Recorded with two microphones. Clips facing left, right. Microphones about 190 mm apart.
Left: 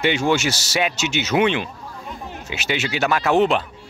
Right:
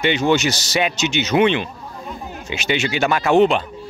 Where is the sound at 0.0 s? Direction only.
10° left (ahead or behind).